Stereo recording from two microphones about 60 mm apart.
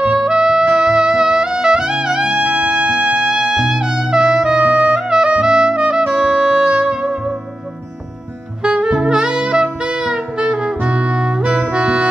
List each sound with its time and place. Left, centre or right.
0.0 s music: centre
4.6 s clarinet: centre
5.4 s brass instrument: centre
6.1 s music: centre
8.6 s saxophone: centre
11.7 s brass instrument: centre